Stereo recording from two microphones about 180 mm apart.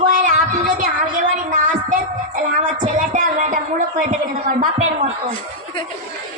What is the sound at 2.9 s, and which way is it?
Speech, 45° right (ahead or behind).